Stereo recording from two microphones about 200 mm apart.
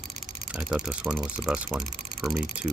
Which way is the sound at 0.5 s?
Centre (ahead or behind).